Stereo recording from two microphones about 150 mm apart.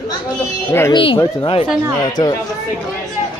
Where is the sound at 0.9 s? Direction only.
35° left (ahead or behind).